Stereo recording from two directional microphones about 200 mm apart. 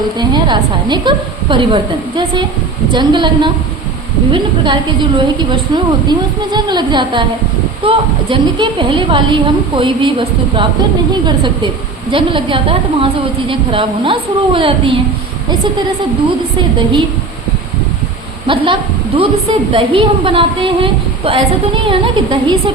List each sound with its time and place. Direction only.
0.2 s a woman's voice: 20° right (ahead or behind)
18.4 s a woman's voice: 25° right (ahead or behind)